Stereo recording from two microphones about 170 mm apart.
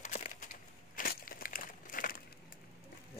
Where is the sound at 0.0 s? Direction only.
45° left (ahead or behind).